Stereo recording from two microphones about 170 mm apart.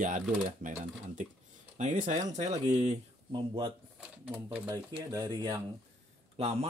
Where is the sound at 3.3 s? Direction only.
30° right (ahead or behind).